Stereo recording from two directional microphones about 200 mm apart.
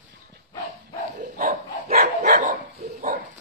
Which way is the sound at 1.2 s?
45° right (ahead or behind).